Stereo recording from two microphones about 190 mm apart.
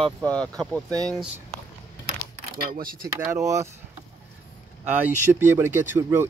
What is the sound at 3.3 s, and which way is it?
Speech, 15° right (ahead or behind).